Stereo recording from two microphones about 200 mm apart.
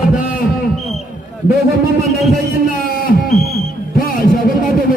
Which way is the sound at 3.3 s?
Centre (ahead or behind).